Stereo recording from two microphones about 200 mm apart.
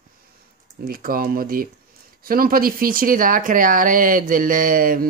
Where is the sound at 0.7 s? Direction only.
45° right (ahead or behind).